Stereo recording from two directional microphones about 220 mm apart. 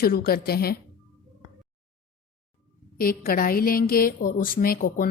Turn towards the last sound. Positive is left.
turn(degrees=40)  # may be behind; listen again after turning